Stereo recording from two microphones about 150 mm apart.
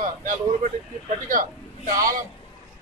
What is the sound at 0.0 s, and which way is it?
A man's voice, 60° right (ahead or behind).